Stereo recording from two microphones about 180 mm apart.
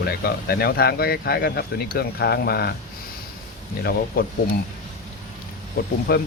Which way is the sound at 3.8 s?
60° left (ahead or behind).